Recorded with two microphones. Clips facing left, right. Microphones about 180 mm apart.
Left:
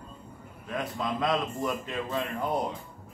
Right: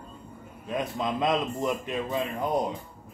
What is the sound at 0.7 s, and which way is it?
A man's voice, 20° right (ahead or behind).